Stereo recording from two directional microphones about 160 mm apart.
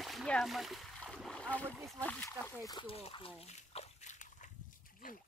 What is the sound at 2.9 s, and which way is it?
Speech, 35° left (ahead or behind).